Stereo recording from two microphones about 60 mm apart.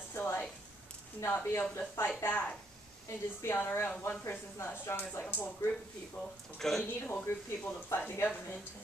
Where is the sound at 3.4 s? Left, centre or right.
Left.